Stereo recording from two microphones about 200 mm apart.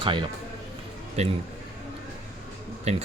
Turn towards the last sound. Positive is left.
turn(degrees=-30)  # may be behind; listen again after turning